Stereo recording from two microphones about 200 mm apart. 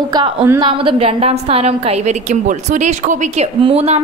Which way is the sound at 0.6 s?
25° right (ahead or behind).